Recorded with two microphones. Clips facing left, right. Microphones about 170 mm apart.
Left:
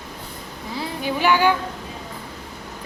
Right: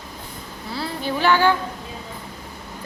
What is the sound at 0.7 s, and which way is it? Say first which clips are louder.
Speech: even; 15° left (ahead or behind).